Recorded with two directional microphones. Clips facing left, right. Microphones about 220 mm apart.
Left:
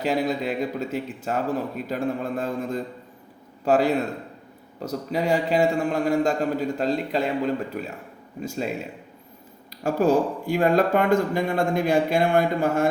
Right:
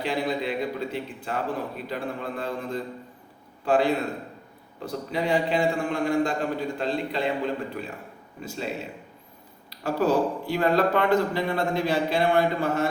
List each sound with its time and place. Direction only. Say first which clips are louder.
0.0 s a man's voice: left 3 dB; 45° left (ahead or behind)
8.4 s a man's voice: left 4 dB; 45° left (ahead or behind)
9.8 s a man's voice: left 3 dB; 45° left (ahead or behind)